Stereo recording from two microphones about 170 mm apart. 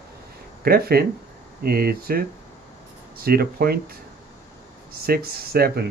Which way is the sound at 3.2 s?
65° right (ahead or behind).